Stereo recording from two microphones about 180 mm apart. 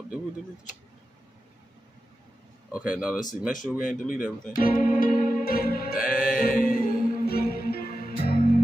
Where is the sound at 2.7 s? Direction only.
5° right (ahead or behind).